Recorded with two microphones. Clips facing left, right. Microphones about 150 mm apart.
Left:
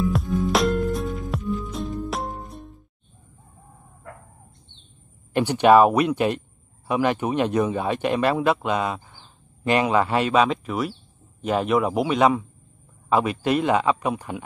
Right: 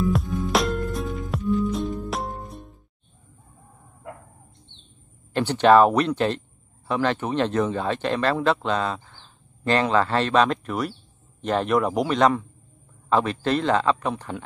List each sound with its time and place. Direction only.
0.0 s music: centre (ahead or behind)
4.1 s bow-wow: 20° right (ahead or behind)
5.3 s speech: 10° left (ahead or behind)